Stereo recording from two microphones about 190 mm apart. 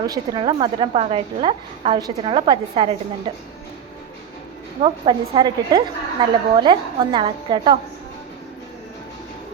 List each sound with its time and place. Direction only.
0.0 s a woman's voice: 20° right (ahead or behind)
4.8 s a woman's voice: 30° right (ahead or behind)